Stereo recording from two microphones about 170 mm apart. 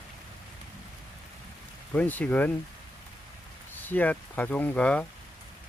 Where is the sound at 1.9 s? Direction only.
10° left (ahead or behind).